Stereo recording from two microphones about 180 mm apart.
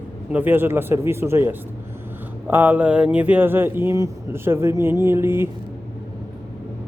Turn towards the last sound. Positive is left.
turn(degrees=-15)  # may be behind; listen again after turning